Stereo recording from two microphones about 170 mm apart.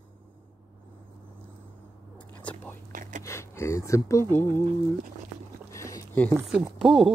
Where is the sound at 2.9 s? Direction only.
55° right (ahead or behind).